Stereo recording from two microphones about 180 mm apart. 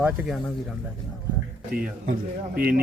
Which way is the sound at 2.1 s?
55° right (ahead or behind).